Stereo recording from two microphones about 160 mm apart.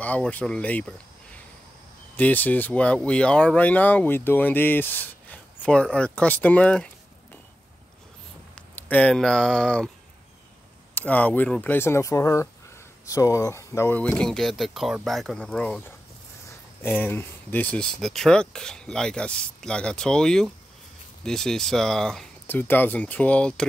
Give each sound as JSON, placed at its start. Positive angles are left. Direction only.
{"t": 0.0, "sound": "speech", "side_deg": 10}
{"t": 2.1, "sound": "speech", "side_deg": 10}
{"t": 8.5, "sound": "speech", "side_deg": 10}
{"t": 11.0, "sound": "speech", "side_deg": 10}
{"t": 14.0, "sound": "speech", "side_deg": 5}
{"t": 16.8, "sound": "speech", "side_deg": 10}